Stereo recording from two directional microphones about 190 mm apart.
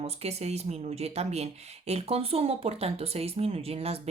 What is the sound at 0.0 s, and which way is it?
Speech, 35° right (ahead or behind).